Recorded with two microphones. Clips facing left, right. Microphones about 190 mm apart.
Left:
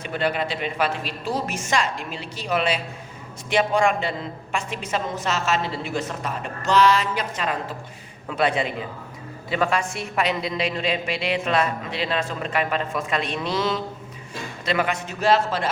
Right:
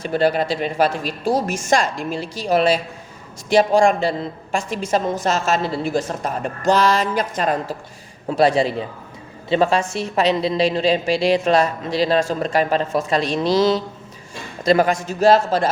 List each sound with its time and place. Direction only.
0.0 s a woman's voice: 35° right (ahead or behind)